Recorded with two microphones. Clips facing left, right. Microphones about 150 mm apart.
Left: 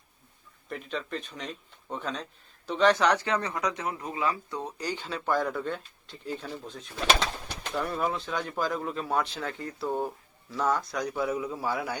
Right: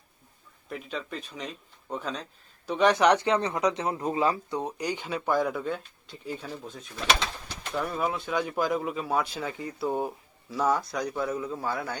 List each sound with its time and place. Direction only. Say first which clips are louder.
0.7 s speech: left 1 dB; 5° right (ahead or behind)
2.6 s speech: right 2 dB; 15° right (ahead or behind); by 11.9 s 10° left (ahead or behind)